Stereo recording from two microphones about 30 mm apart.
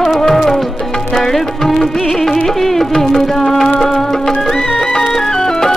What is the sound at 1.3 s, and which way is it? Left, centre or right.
Music, centre.